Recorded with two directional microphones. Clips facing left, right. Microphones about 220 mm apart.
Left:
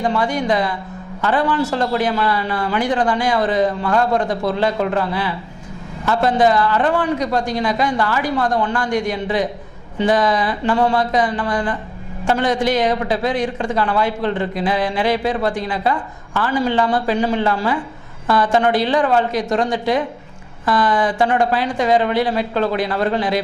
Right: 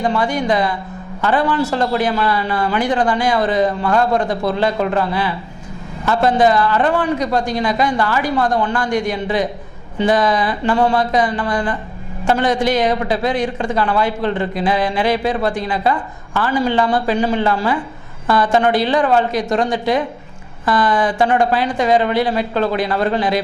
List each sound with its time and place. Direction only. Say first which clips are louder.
0.0 s a man's voice: right 1 dB; 20° right (ahead or behind)